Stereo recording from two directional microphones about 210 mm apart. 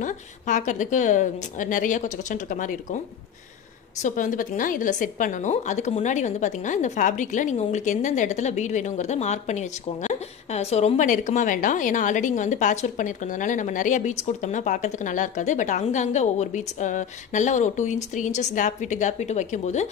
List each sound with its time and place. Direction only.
0.0 s a woman's voice: 35° left (ahead or behind)
4.0 s a woman's voice: 40° left (ahead or behind)